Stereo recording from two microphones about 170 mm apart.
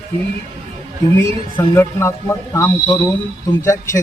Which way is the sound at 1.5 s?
15° left (ahead or behind).